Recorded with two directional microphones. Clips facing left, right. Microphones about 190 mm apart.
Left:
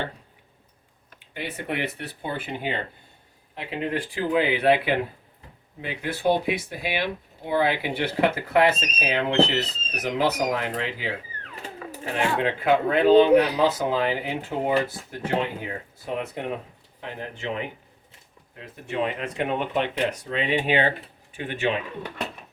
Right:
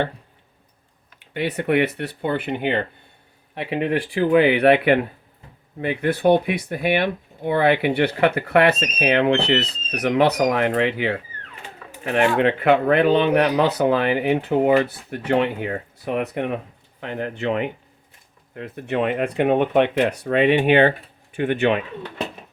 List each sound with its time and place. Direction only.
1.2 s speech: 70° right (ahead or behind)
12.1 s speech: 65° right (ahead or behind)